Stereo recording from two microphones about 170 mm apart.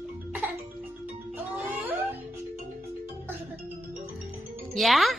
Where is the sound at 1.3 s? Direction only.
10° right (ahead or behind).